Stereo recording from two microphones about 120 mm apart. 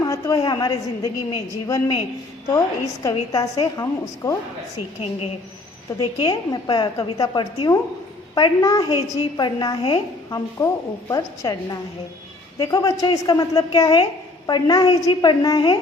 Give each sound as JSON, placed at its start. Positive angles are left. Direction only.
{"t": 0.0, "sound": "a woman's voice", "side_deg": 30}
{"t": 6.0, "sound": "a woman's voice", "side_deg": 35}